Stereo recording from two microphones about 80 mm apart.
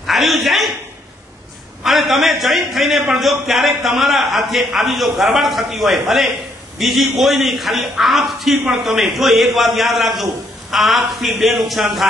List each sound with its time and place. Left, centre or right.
0.0 s a man's voice: centre
1.8 s a man's voice: centre